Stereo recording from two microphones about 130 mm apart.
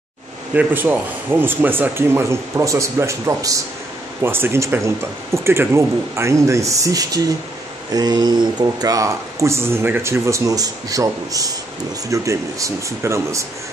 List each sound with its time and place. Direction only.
0.6 s speech: 15° right (ahead or behind)